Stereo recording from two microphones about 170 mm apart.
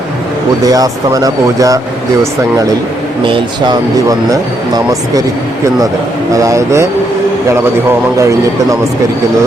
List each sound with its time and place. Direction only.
0.6 s speech: 20° right (ahead or behind)
3.2 s speech: 30° right (ahead or behind)
6.3 s speech: 20° right (ahead or behind)